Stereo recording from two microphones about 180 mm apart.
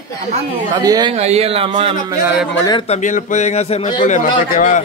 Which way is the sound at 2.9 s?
45° left (ahead or behind).